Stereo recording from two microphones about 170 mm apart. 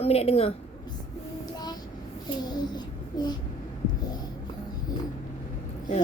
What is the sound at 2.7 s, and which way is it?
Child singing, 25° left (ahead or behind).